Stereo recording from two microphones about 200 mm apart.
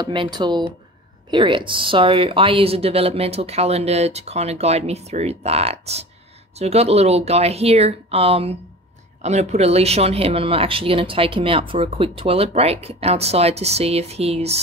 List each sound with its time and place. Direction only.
0.0 s speech: 20° right (ahead or behind)